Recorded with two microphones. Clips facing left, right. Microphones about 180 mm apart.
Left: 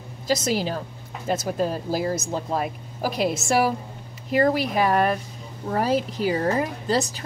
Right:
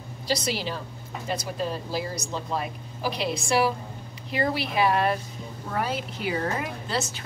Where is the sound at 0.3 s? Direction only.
45° left (ahead or behind).